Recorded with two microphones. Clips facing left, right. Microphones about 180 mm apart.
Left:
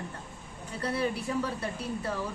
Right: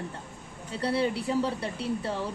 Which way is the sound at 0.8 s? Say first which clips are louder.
Right 3 dB; 30° right (ahead or behind).